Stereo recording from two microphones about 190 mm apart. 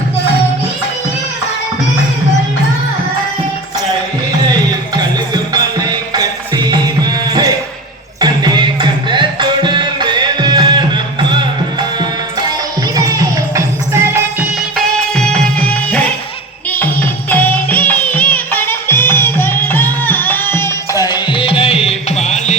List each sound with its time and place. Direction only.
4.4 s music: 20° right (ahead or behind)
14.8 s music: 5° left (ahead or behind); by 22.5 s 35° left (ahead or behind)